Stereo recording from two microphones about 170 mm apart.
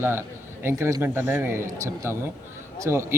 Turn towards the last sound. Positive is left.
turn(degrees=-15)  # may be behind; listen again after turning